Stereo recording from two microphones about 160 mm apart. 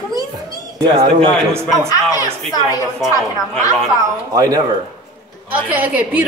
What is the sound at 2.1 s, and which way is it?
Speech, 20° left (ahead or behind).